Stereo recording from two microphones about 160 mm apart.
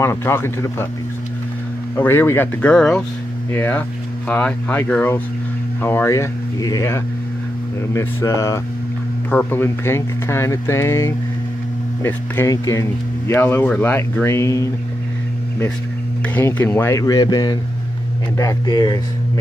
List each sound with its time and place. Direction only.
0.0 s speech: 15° left (ahead or behind)
2.0 s speech: 15° left (ahead or behind)
16.3 s speech: 10° left (ahead or behind)